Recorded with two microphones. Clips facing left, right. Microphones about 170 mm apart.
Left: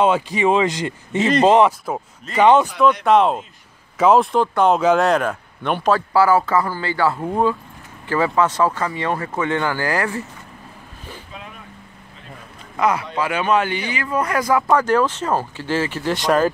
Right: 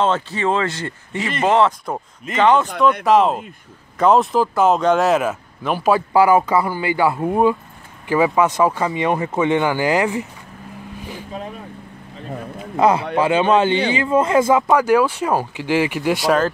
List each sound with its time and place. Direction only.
0.0 s speech: 15° left (ahead or behind)
2.8 s speech: centre (ahead or behind)
5.9 s a man's voice: 15° right (ahead or behind)
12.7 s a man's voice: 30° right (ahead or behind); by 16.3 s 10° right (ahead or behind)